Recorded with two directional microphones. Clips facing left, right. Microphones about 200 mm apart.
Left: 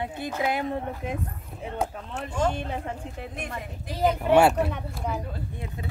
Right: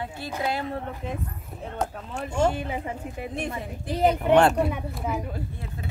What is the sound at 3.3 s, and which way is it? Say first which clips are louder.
Speech: right 4 dB; 30° right (ahead or behind).